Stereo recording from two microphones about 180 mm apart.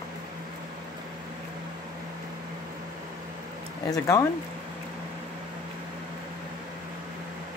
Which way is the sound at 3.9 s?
20° left (ahead or behind).